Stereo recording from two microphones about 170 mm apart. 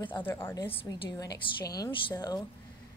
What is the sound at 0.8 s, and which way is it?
A woman's voice, 25° left (ahead or behind).